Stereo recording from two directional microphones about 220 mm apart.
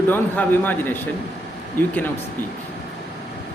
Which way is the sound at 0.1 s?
10° left (ahead or behind).